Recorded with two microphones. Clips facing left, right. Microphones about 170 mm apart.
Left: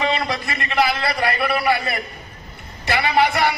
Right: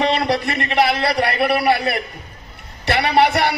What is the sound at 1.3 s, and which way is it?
A man's voice, 70° right (ahead or behind).